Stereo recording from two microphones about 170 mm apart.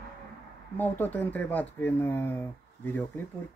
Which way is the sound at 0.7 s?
10° left (ahead or behind).